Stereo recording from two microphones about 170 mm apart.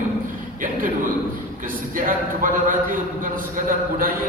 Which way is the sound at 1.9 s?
50° right (ahead or behind).